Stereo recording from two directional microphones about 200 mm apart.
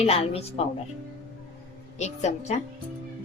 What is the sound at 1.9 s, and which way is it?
Speech, 35° left (ahead or behind).